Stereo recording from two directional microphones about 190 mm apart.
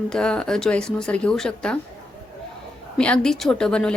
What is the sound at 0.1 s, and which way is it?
A woman's voice, 5° left (ahead or behind).